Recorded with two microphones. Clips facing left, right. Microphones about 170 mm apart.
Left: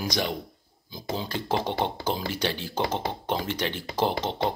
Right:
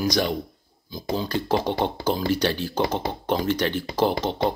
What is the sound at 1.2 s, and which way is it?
Speech, 25° left (ahead or behind).